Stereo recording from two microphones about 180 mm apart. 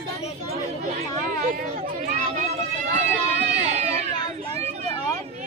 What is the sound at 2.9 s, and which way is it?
Speech, 40° right (ahead or behind).